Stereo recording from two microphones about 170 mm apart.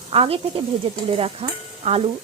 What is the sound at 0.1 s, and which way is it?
A woman's voice, 35° right (ahead or behind).